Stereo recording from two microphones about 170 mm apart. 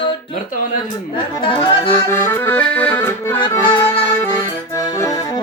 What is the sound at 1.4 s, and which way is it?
Music, 30° left (ahead or behind).